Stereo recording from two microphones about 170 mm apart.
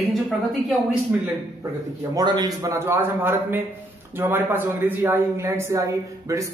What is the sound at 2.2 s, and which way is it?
A man's voice, 25° right (ahead or behind).